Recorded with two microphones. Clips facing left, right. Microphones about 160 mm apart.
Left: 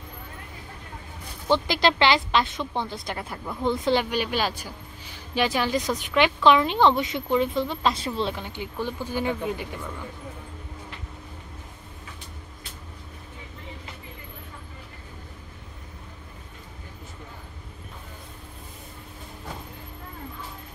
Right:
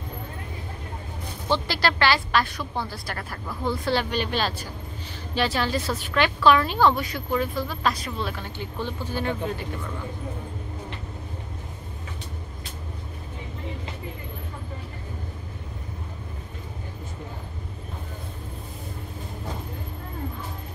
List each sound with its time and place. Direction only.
1.5 s a woman's voice: 20° left (ahead or behind)